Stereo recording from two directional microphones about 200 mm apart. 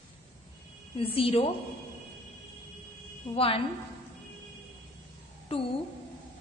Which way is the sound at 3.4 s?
30° left (ahead or behind).